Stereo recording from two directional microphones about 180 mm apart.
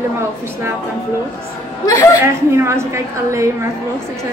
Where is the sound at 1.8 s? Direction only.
15° left (ahead or behind).